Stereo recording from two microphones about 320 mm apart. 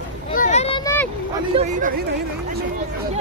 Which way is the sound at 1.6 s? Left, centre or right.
Right.